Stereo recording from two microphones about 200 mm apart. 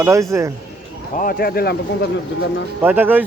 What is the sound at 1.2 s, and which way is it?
Speech, 50° left (ahead or behind).